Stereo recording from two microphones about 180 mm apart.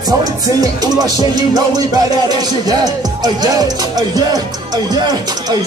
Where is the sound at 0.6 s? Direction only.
20° right (ahead or behind).